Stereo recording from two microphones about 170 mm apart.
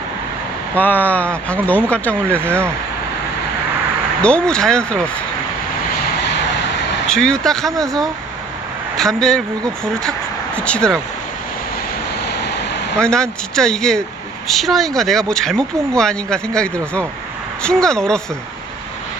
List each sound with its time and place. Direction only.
0.8 s speech: 10° left (ahead or behind)
2.4 s speech: 15° right (ahead or behind)
4.2 s speech: 5° left (ahead or behind)
7.1 s speech: 5° left (ahead or behind)
12.3 s a sound: 85° left
13.0 s speech: 5° left (ahead or behind)